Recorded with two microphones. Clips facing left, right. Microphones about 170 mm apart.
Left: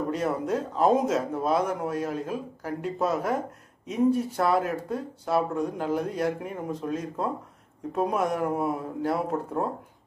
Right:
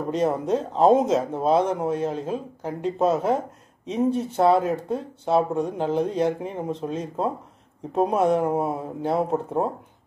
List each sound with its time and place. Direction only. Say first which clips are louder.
0.2 s speech: right 4 dB; 25° right (ahead or behind)